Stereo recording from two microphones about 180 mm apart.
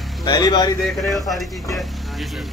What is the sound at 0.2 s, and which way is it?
Speech, 25° left (ahead or behind).